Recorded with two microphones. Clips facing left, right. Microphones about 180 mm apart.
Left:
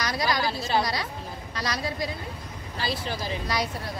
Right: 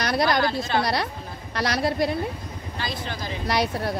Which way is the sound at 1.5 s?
65° right (ahead or behind).